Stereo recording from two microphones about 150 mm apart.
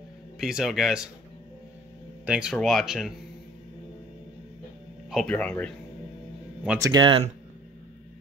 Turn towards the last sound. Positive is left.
turn(degrees=-30)  # may be behind; listen again after turning